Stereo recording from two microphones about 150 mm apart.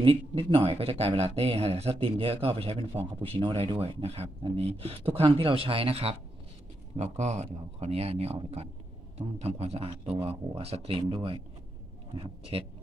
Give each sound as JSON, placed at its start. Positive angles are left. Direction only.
{"t": 0.0, "sound": "speech", "side_deg": -40}